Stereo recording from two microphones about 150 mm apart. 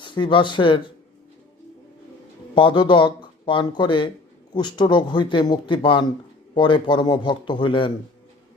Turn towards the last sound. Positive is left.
turn(degrees=35)  # may be behind; listen again after turning